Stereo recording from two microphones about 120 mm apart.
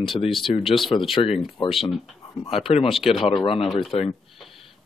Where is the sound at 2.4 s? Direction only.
55° left (ahead or behind).